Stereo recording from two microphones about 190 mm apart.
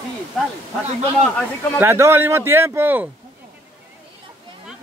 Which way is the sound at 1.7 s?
15° right (ahead or behind).